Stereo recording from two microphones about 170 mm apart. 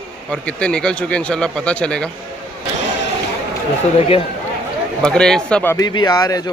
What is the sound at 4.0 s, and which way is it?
Speech, 35° left (ahead or behind).